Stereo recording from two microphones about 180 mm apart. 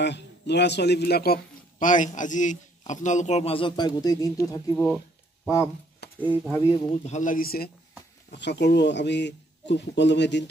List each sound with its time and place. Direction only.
0.0 s a man's voice: 70° left (ahead or behind); by 4.8 s 20° left (ahead or behind)
4.8 s a sound: 5° left (ahead or behind)
6.1 s speech: 10° right (ahead or behind)
7.1 s speech: 45° left (ahead or behind)
8.3 s a man's voice: 70° left (ahead or behind)